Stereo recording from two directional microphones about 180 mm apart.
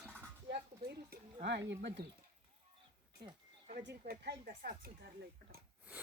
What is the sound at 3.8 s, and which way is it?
Speech, 60° right (ahead or behind).